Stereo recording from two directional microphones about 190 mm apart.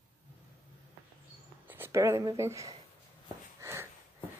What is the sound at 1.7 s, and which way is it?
Speech, 15° right (ahead or behind).